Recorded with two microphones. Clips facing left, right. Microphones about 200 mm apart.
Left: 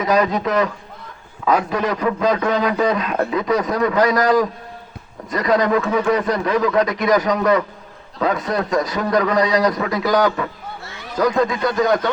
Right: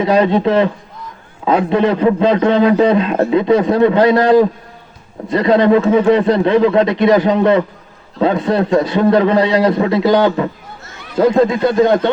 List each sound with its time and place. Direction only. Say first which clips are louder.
0.0 s a man's voice: right 5 dB; 30° right (ahead or behind)